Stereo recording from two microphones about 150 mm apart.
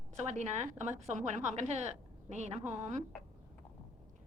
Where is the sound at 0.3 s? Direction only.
55° right (ahead or behind).